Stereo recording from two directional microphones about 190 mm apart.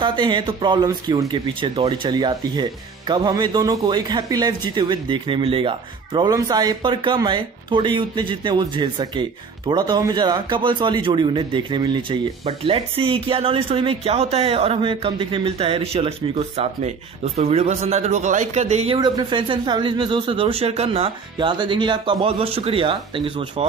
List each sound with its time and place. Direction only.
0.0 s a man's voice: 25° right (ahead or behind)
18.9 s a man's voice: 20° right (ahead or behind)